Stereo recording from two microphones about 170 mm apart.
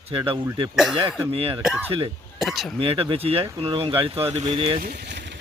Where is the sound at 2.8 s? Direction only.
35° right (ahead or behind).